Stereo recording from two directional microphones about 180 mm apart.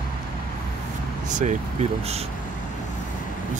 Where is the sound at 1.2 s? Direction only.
45° right (ahead or behind).